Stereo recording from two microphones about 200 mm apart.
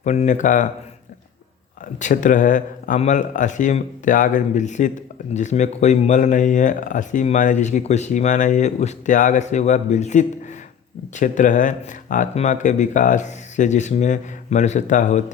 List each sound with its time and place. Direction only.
0.0 s speech: 35° left (ahead or behind)
2.0 s speech: 40° left (ahead or behind)